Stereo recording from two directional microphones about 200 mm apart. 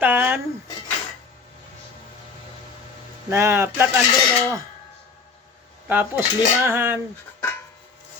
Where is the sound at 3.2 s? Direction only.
15° right (ahead or behind).